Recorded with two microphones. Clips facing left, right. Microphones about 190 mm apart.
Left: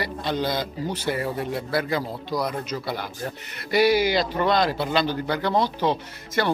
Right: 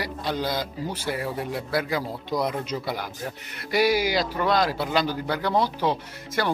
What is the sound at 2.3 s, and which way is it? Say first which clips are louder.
Speech: right 2 dB; 20° right (ahead or behind).